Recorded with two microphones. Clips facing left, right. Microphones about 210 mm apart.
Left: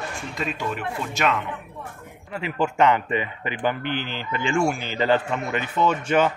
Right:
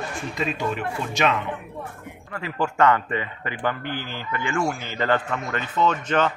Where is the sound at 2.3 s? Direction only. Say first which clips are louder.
Left 2 dB; 20° left (ahead or behind).